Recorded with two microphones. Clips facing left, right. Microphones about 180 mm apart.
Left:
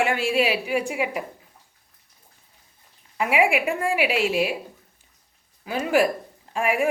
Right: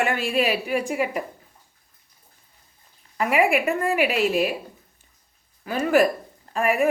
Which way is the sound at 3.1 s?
10° left (ahead or behind).